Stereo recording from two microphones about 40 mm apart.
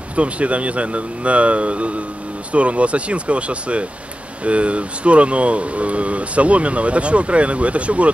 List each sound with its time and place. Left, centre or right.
0.1 s speech: right